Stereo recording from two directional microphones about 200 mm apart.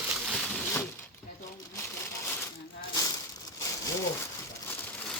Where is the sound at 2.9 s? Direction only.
20° left (ahead or behind).